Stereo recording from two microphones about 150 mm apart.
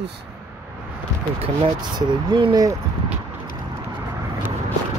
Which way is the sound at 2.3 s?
30° right (ahead or behind).